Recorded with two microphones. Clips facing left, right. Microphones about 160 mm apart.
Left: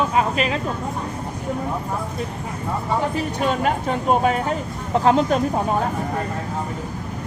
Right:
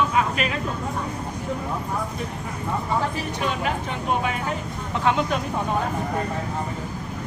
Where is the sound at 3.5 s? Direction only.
45° left (ahead or behind).